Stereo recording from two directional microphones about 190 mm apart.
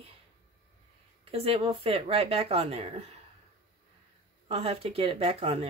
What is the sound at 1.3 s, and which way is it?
Speech, 30° right (ahead or behind).